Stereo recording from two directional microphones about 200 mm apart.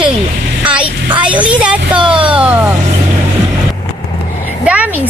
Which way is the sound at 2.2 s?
5° right (ahead or behind).